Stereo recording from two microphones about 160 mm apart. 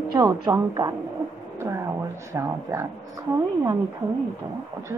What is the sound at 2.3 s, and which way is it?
Speech, 15° right (ahead or behind).